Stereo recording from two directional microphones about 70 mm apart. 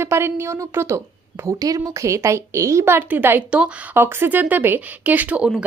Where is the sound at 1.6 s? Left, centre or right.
Right.